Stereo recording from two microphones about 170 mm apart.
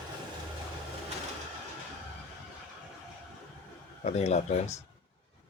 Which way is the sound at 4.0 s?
40° left (ahead or behind).